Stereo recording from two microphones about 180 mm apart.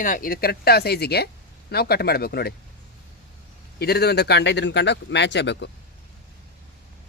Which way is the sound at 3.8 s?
60° left (ahead or behind).